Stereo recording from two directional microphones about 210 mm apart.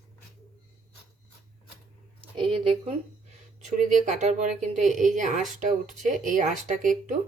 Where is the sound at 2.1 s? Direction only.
25° right (ahead or behind).